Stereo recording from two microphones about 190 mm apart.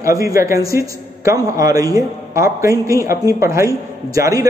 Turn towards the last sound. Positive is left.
turn(degrees=-20)  # may be behind; listen again after turning